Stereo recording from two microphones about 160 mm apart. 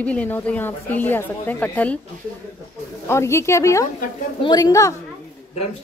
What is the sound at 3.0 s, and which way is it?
A woman's voice, 15° left (ahead or behind).